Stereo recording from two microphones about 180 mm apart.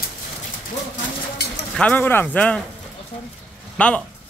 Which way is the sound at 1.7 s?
10° left (ahead or behind).